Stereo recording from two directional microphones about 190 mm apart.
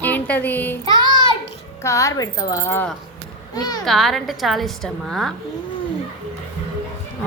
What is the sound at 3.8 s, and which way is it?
A woman's voice, centre (ahead or behind).